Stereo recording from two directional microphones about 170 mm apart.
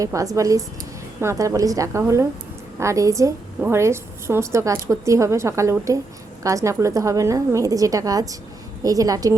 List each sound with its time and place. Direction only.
0.0 s a woman's voice: 20° right (ahead or behind)